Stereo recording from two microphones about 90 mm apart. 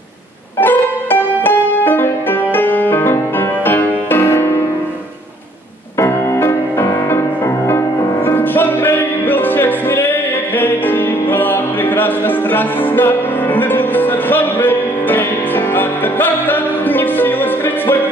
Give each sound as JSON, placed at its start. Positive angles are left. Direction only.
{"t": 0.6, "sound": "music", "side_deg": 20}
{"t": 5.9, "sound": "music", "side_deg": 30}